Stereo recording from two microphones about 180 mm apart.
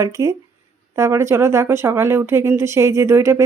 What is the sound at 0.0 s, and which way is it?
Speech, 20° right (ahead or behind).